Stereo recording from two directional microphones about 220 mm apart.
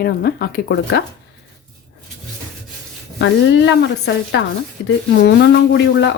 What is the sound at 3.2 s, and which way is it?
A woman's voice, 55° left (ahead or behind).